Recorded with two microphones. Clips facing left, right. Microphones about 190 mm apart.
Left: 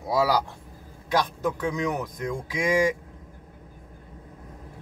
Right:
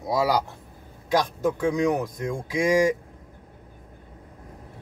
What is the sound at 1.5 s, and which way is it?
Speech, 25° right (ahead or behind).